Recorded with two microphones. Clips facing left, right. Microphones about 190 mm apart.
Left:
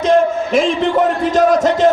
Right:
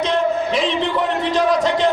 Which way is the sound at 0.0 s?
45° left (ahead or behind).